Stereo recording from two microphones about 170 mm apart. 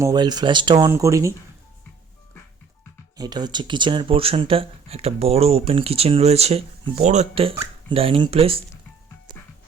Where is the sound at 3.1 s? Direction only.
25° right (ahead or behind).